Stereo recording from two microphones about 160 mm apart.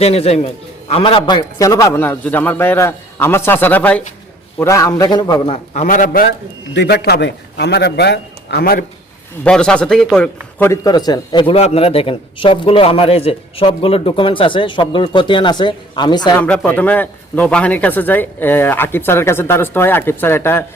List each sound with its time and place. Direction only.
0.0 s a man's voice: 40° left (ahead or behind)
5.7 s a man's voice: 50° left (ahead or behind)
6.7 s a man's voice: 90° left
9.4 s speech: 5° left (ahead or behind)
10.6 s a man's voice: 20° left (ahead or behind)
16.4 s speech: 10° left (ahead or behind)